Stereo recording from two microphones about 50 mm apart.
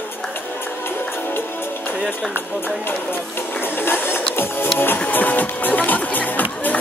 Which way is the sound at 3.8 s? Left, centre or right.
Left.